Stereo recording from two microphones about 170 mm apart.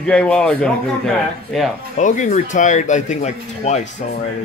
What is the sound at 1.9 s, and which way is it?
Speech, 45° left (ahead or behind).